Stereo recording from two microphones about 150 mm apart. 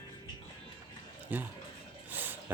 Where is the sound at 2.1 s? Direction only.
10° right (ahead or behind).